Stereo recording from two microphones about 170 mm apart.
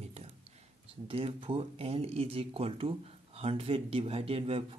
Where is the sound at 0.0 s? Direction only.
40° right (ahead or behind).